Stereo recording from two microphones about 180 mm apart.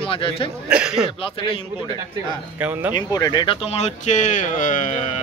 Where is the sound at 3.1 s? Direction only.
25° left (ahead or behind).